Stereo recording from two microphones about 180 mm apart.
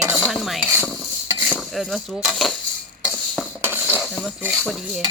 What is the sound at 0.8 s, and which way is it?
Stir, 5° left (ahead or behind).